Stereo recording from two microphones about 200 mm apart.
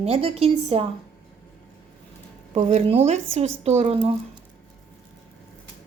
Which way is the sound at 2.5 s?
35° right (ahead or behind).